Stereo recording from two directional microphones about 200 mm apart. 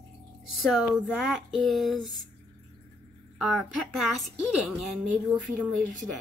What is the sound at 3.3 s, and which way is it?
Speech, centre (ahead or behind).